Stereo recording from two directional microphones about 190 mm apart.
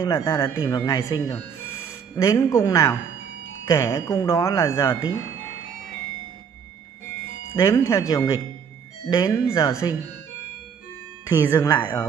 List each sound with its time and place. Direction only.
0.0 s speech: 15° left (ahead or behind)
7.5 s speech: 15° left (ahead or behind)
11.2 s speech: 10° left (ahead or behind)